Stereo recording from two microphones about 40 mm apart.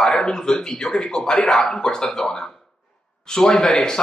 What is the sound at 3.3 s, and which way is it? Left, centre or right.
Speech, centre.